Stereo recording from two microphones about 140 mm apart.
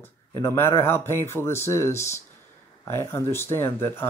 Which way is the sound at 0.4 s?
20° left (ahead or behind).